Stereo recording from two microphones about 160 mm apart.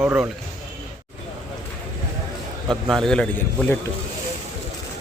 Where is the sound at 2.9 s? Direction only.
5° left (ahead or behind).